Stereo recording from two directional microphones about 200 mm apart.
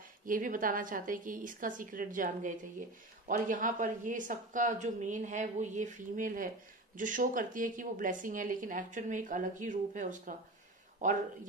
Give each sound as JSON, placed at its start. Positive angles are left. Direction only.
{"t": 0.3, "sound": "a woman's voice", "side_deg": -45}